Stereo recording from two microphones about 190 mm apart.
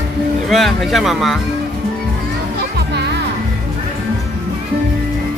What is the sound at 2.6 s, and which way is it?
Music, 60° right (ahead or behind).